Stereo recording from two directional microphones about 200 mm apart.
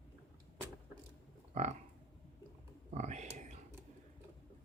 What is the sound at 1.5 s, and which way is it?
Livestock, 35° right (ahead or behind).